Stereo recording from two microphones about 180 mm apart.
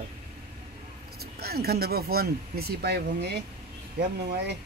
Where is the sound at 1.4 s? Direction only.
60° right (ahead or behind).